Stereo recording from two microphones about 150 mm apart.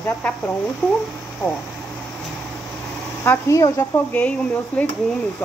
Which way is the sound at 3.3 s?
20° left (ahead or behind).